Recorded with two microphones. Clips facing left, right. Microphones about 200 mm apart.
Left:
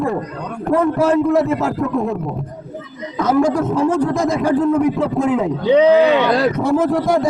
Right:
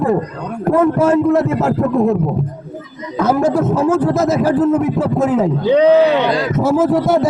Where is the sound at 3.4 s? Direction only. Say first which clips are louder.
Right 2 dB; 5° right (ahead or behind).